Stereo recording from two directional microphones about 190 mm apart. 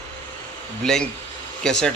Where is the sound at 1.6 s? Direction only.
5° left (ahead or behind).